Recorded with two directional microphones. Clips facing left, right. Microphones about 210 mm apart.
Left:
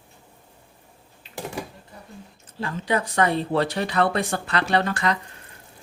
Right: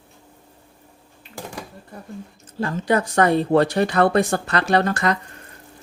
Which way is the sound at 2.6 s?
45° right (ahead or behind).